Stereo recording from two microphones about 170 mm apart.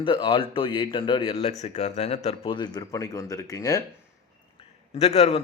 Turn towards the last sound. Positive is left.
turn(degrees=35)  # may be behind; listen again after turning